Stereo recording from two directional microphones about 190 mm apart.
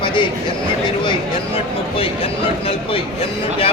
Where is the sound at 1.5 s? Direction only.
30° left (ahead or behind).